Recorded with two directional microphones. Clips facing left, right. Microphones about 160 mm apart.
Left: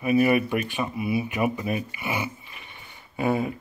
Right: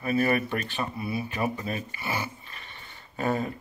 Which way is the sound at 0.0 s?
10° left (ahead or behind).